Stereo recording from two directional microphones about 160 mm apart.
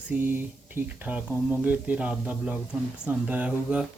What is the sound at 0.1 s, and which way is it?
Speech, 10° right (ahead or behind).